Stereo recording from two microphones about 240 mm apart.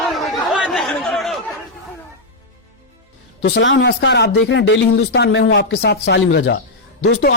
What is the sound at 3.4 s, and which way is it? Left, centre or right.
Speech, left.